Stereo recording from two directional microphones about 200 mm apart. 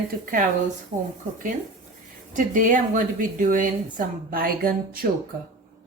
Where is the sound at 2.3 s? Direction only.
40° right (ahead or behind).